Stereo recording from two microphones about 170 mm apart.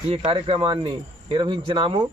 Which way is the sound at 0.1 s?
35° right (ahead or behind).